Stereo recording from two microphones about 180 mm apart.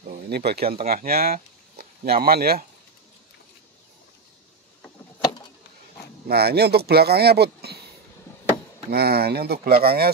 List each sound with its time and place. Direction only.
0.1 s speech: 60° right (ahead or behind)
6.2 s speech: 60° right (ahead or behind)
8.9 s speech: 60° right (ahead or behind)